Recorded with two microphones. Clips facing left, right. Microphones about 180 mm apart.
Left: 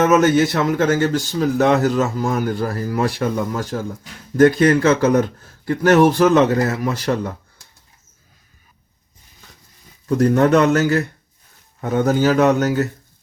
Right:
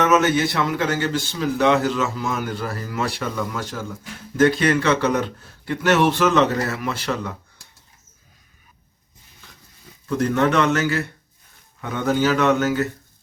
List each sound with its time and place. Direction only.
0.0 s speech: 40° left (ahead or behind)
10.1 s speech: 40° left (ahead or behind)